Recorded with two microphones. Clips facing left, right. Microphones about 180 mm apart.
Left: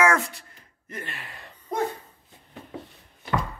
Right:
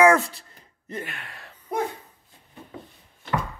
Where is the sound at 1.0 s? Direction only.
Centre (ahead or behind).